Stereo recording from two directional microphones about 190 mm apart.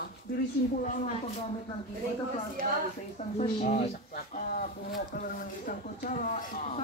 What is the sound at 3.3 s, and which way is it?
Speech, 40° left (ahead or behind).